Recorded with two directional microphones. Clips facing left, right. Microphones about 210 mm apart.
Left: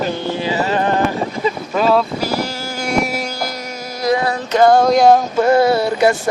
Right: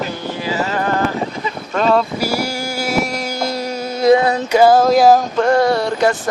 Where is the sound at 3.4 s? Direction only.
30° right (ahead or behind).